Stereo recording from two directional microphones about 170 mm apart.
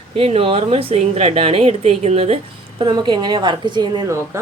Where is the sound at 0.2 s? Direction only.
35° right (ahead or behind).